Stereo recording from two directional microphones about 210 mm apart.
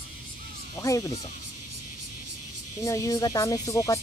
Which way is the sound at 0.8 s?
15° left (ahead or behind).